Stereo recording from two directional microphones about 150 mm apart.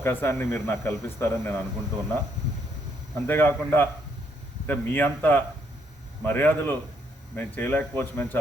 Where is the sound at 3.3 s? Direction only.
15° left (ahead or behind).